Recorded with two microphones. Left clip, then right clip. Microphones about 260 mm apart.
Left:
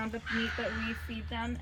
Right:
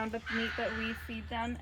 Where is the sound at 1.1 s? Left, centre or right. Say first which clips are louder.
Left 1 dB; right.